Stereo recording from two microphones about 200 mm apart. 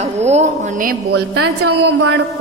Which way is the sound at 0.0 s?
35° right (ahead or behind).